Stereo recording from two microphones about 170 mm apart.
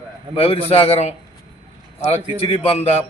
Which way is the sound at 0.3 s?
35° left (ahead or behind).